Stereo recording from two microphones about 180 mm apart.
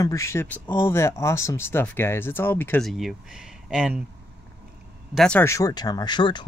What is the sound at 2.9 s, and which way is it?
Speech, centre (ahead or behind).